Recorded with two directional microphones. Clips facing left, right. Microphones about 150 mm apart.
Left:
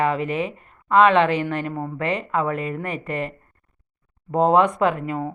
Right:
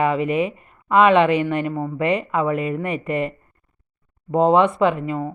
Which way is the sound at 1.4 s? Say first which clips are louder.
Right 3 dB; 5° right (ahead or behind).